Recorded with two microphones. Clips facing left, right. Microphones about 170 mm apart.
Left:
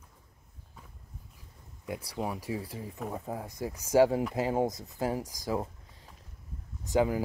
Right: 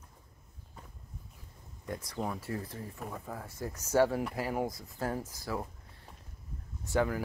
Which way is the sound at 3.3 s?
15° left (ahead or behind).